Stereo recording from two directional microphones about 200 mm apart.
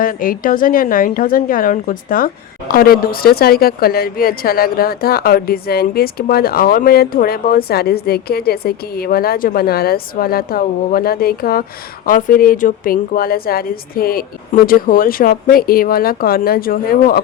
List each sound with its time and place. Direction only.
0.0 s a woman's voice: 45° left (ahead or behind)